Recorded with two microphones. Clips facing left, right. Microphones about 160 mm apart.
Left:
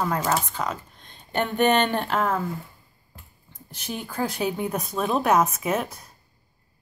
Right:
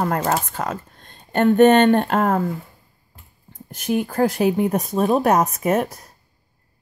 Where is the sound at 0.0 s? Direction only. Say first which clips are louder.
Right 3 dB; 55° right (ahead or behind).